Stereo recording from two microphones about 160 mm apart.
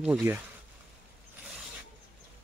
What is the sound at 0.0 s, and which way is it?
Speech, 10° right (ahead or behind).